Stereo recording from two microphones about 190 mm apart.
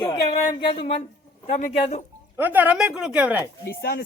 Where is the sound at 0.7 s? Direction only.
30° left (ahead or behind).